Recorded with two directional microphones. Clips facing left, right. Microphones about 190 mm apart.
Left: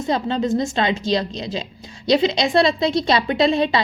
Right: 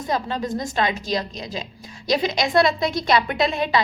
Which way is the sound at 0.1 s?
25° left (ahead or behind).